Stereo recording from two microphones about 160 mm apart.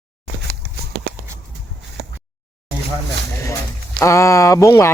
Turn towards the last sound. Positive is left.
turn(degrees=20)  # may be behind; listen again after turning